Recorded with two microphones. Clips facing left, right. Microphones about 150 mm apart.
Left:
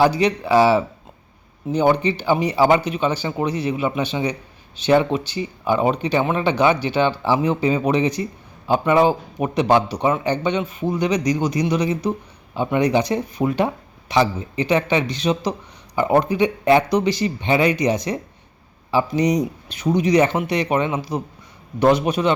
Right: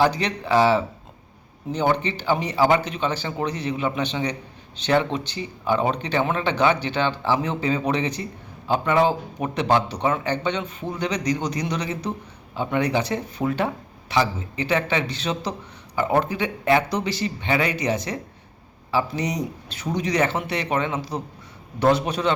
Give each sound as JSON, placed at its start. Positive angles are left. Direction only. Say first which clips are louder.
{"t": 0.0, "sound": "speech", "louder": "left 4 dB", "side_deg": 10}